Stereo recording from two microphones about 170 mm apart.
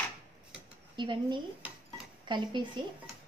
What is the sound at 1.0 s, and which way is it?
A woman's voice, 25° right (ahead or behind).